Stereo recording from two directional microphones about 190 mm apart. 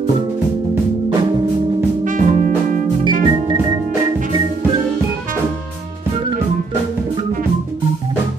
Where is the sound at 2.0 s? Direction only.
45° right (ahead or behind).